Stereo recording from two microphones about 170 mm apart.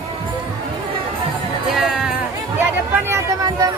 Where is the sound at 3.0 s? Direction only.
15° right (ahead or behind).